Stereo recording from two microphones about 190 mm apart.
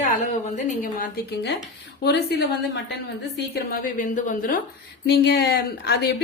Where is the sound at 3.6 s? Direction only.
45° left (ahead or behind).